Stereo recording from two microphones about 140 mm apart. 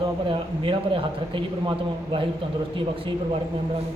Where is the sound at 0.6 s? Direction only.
35° right (ahead or behind).